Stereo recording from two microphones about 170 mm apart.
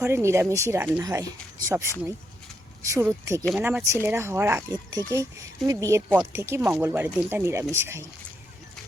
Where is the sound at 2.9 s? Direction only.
15° right (ahead or behind).